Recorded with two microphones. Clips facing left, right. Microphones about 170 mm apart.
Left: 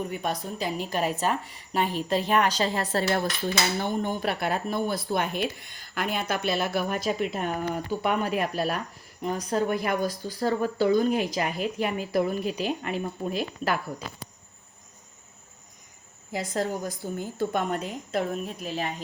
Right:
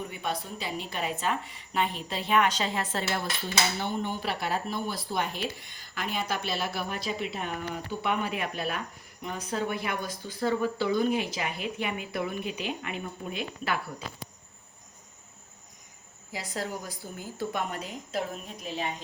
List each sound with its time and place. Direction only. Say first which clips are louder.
0.1 s speech: left 3 dB; 45° left (ahead or behind)
16.3 s speech: left 6 dB; 50° left (ahead or behind)